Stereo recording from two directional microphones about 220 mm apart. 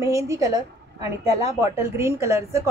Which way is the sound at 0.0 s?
15° right (ahead or behind).